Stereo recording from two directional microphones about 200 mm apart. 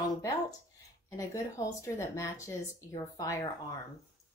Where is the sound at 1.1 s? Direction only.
15° left (ahead or behind).